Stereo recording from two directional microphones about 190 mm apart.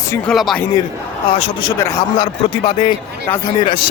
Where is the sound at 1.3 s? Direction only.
30° left (ahead or behind).